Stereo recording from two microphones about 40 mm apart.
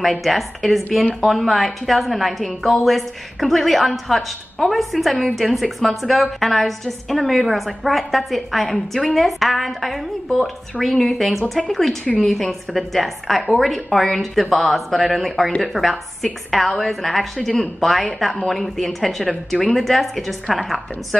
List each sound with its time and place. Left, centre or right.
0.0 s a woman's voice: centre
12.0 s a woman's voice: left
12.3 s a woman's voice: centre